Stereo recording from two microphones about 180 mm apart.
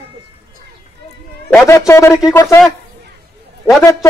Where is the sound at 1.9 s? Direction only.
15° left (ahead or behind).